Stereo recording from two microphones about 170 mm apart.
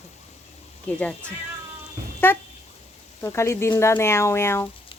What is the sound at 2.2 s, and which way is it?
A woman's voice, 10° left (ahead or behind).